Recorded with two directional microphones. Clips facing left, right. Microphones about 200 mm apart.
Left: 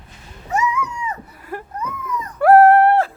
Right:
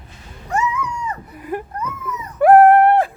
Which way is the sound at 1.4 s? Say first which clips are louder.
Right 7 dB; 15° right (ahead or behind).